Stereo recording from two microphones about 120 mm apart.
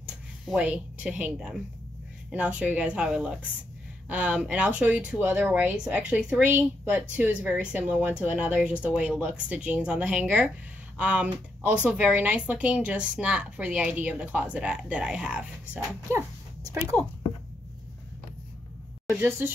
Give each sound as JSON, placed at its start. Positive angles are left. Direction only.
{"t": 0.5, "sound": "speech", "side_deg": -5}
{"t": 19.1, "sound": "a woman's voice", "side_deg": -20}